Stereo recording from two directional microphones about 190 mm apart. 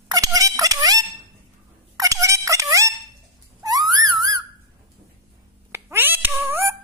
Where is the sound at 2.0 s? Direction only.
15° right (ahead or behind).